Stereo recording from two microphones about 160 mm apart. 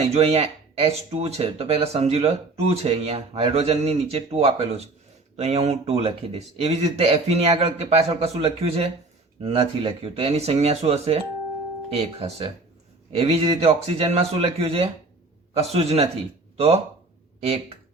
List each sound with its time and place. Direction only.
0.1 s speech: 40° right (ahead or behind)